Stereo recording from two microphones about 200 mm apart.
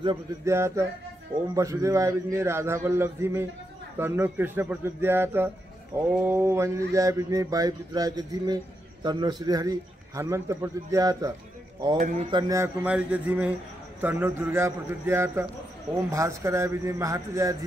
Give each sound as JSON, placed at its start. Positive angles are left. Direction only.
{"t": 0.0, "sound": "mantra", "side_deg": -20}